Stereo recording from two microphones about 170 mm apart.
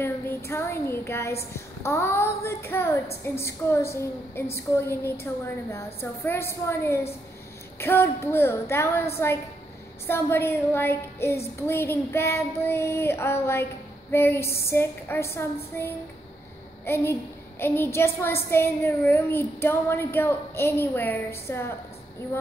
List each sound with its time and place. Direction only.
0.0 s a child's voice: 15° left (ahead or behind)